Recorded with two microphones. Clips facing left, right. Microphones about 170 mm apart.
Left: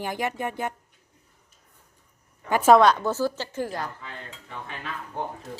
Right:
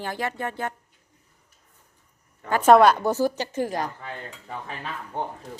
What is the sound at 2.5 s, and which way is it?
Speech, 10° left (ahead or behind).